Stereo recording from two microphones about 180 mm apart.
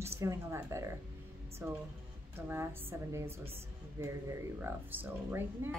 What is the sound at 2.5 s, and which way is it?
Speech, 15° right (ahead or behind).